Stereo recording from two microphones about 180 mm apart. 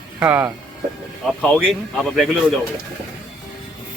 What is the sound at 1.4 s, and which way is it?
Speech, 5° left (ahead or behind).